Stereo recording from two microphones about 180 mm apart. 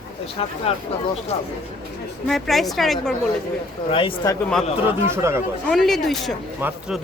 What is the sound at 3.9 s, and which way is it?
Speech, 30° left (ahead or behind).